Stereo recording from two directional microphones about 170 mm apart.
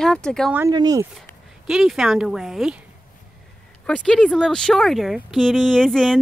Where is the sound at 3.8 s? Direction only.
5° left (ahead or behind).